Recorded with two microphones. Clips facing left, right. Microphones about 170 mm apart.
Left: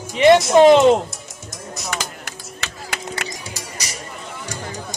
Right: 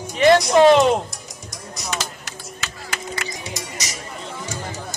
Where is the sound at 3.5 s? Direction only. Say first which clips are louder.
Right 1 dB; 30° left (ahead or behind).